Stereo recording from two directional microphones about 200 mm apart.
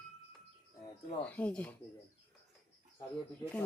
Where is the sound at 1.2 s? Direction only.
5° left (ahead or behind).